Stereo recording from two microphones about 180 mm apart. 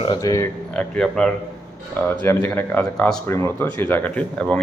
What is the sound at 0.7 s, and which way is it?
Speech, 5° left (ahead or behind).